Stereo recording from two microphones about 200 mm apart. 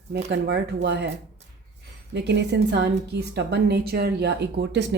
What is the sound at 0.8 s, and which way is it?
Speech, 60° right (ahead or behind).